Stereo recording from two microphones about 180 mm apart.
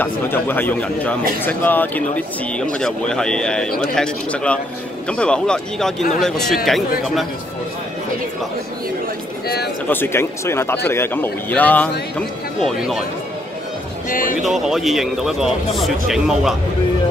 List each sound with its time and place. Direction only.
0.0 s speech: 10° left (ahead or behind)
9.8 s speech: 10° left (ahead or behind)
14.0 s speech: 50° left (ahead or behind)
14.4 s speech: centre (ahead or behind)